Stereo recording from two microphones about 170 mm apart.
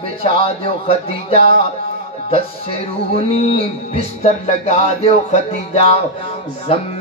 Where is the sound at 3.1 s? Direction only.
35° left (ahead or behind).